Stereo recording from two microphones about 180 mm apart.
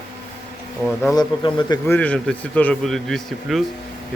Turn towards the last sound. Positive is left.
turn(degrees=0)  # may be behind; listen again after turning